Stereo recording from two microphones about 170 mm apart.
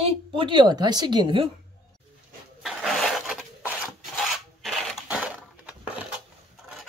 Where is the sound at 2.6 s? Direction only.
Centre (ahead or behind).